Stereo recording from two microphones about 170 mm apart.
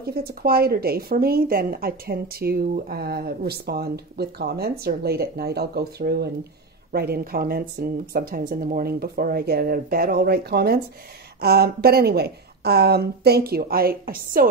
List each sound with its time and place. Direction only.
0.0 s a woman's voice: 65° right (ahead or behind)